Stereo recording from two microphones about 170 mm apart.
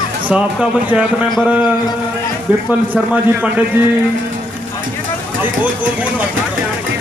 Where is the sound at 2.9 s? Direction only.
10° right (ahead or behind).